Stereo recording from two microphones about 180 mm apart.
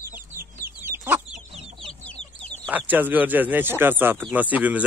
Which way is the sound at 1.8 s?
5° left (ahead or behind).